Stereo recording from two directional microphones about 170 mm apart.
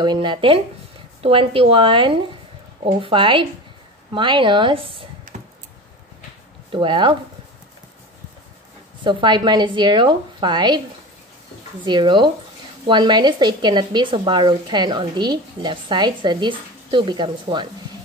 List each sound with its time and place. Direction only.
0.0 s a woman's voice: 25° right (ahead or behind)
5.3 s computer keyboard: 40° right (ahead or behind)
6.7 s speech: 30° right (ahead or behind)
9.0 s speech: 25° right (ahead or behind)
11.8 s speech: 30° right (ahead or behind)